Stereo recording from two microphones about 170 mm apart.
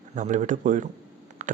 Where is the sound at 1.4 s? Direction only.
50° right (ahead or behind).